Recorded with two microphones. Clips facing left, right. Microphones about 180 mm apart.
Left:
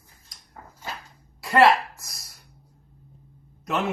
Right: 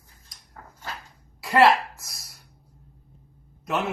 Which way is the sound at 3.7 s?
Centre (ahead or behind).